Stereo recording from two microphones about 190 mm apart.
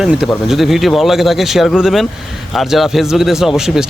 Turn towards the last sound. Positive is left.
turn(degrees=0)  # may be behind; listen again after turning